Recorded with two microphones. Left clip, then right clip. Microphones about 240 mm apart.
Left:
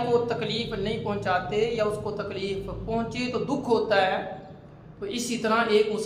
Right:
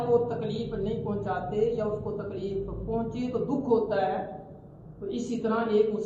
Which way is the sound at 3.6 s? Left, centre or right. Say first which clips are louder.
Left 3 dB; left.